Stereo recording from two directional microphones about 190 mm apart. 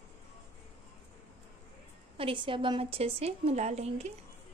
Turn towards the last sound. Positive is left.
turn(degrees=-35)  # may be behind; listen again after turning